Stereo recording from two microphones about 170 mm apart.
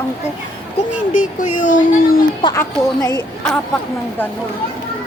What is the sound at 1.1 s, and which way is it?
Speech, 50° left (ahead or behind).